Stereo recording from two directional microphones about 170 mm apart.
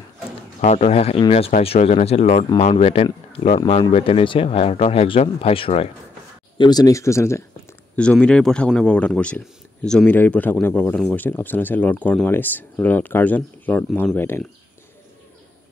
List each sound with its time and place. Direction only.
0.6 s speech: 40° left (ahead or behind)
6.6 s speech: 25° left (ahead or behind)